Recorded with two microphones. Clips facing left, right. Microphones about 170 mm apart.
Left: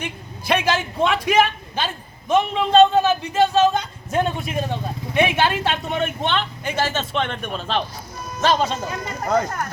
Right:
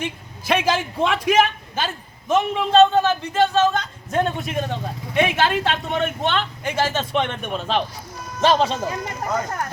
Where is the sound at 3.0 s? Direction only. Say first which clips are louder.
Left 1 dB; 10° left (ahead or behind); by 7.3 s 15° right (ahead or behind).